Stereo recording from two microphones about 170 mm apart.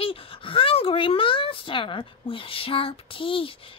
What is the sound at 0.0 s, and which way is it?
A woman's voice, 35° left (ahead or behind).